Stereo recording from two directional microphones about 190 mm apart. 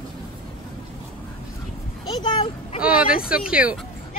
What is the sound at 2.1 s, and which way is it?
Speech, 25° left (ahead or behind).